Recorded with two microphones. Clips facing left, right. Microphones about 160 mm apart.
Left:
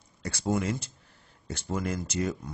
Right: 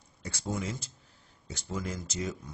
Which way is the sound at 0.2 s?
70° left (ahead or behind).